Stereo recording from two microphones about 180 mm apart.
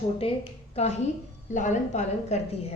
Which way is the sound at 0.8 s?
35° left (ahead or behind).